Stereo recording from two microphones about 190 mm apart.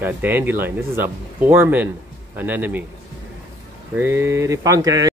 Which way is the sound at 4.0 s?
15° right (ahead or behind).